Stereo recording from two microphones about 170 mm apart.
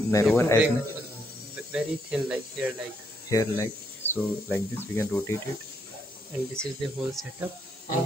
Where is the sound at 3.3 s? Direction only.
15° left (ahead or behind).